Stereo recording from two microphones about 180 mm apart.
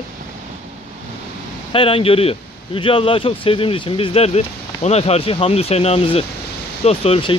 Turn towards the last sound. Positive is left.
turn(degrees=30)  # may be behind; listen again after turning